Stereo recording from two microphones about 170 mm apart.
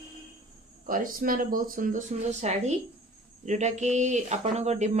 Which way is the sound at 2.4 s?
40° right (ahead or behind).